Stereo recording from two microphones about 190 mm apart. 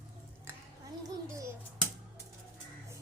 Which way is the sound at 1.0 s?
15° right (ahead or behind).